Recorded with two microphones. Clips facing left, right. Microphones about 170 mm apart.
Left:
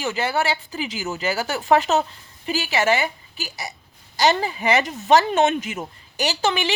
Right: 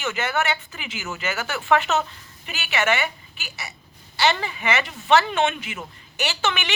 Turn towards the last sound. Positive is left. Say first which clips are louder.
# left 4 dB
turn(degrees=35)  # may be behind; listen again after turning